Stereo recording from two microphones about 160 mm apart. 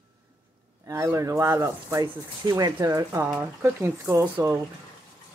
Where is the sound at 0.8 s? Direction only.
20° right (ahead or behind).